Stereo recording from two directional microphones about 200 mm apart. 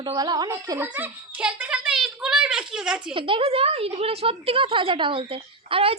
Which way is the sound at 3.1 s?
25° right (ahead or behind).